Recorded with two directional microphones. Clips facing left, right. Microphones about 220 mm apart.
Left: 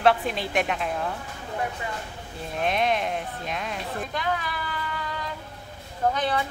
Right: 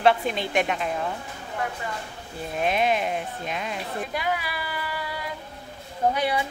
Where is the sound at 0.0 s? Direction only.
Centre (ahead or behind).